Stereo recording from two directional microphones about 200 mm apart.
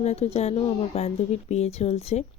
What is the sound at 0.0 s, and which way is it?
Speech, 30° left (ahead or behind).